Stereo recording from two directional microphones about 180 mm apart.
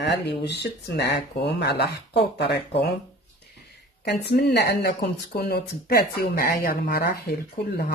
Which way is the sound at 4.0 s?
65° left (ahead or behind).